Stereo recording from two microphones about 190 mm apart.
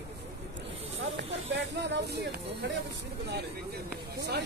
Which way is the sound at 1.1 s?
65° right (ahead or behind).